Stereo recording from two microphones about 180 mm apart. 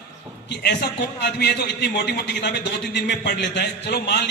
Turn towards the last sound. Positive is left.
turn(degrees=70)  # may be behind; listen again after turning